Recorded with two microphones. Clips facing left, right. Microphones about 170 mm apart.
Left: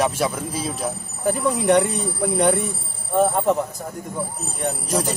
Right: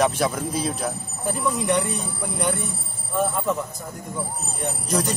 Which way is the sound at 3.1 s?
55° left (ahead or behind).